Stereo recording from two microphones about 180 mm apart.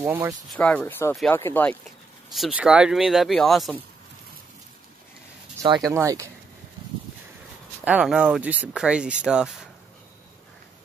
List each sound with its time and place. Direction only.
0.0 s speech: 10° right (ahead or behind)
0.5 s speech: 5° left (ahead or behind)
1.9 s speech: centre (ahead or behind)
5.9 s speech: 20° right (ahead or behind)
7.8 s speech: 5° right (ahead or behind)